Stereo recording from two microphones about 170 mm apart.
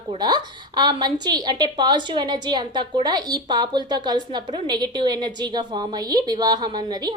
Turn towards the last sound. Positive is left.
turn(degrees=-25)  # may be behind; listen again after turning